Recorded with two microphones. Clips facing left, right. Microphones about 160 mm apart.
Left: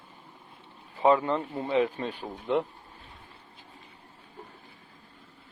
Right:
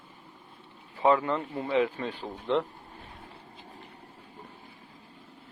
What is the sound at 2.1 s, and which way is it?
Speech, 10° left (ahead or behind).